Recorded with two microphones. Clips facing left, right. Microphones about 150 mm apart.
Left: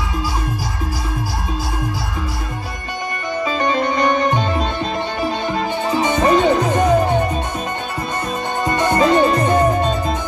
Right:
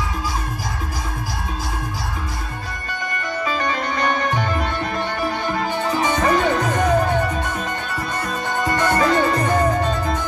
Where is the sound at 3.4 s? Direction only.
25° left (ahead or behind).